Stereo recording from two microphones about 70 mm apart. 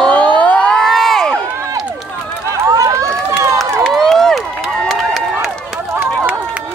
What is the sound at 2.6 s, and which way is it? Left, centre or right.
Run, right.